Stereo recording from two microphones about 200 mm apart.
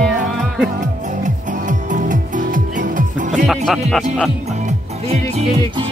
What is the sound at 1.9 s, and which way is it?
Music, 40° right (ahead or behind).